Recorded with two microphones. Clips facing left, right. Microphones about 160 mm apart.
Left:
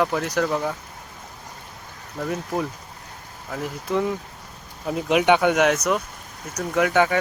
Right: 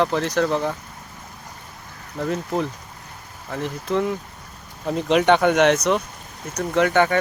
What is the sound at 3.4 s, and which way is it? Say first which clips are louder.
Speech: right 2 dB; 5° left (ahead or behind).